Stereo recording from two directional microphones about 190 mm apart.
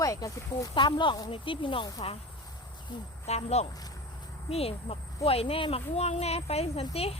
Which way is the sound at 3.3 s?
35° left (ahead or behind).